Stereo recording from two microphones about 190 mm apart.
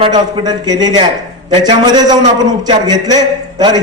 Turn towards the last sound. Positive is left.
turn(degrees=-20)  # may be behind; listen again after turning